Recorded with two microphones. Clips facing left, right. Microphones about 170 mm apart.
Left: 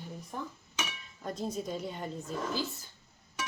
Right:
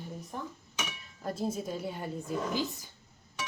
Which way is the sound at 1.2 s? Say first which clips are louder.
Right 2 dB; 5° right (ahead or behind).